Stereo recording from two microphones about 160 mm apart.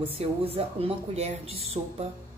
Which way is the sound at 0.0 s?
40° right (ahead or behind).